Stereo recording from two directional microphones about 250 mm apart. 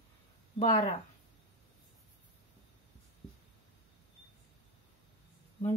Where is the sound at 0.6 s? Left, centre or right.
Left.